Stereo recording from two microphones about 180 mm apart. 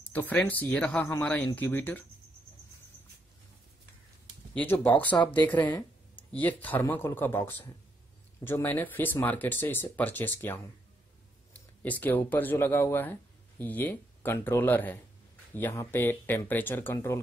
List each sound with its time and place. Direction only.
0.1 s speech: 10° left (ahead or behind)
4.6 s speech: 10° left (ahead or behind)
5.7 s a sound: 20° left (ahead or behind)
6.3 s speech: 10° left (ahead or behind)